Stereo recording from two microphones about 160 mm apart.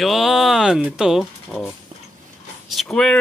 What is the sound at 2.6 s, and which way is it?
Vehicle, 5° left (ahead or behind).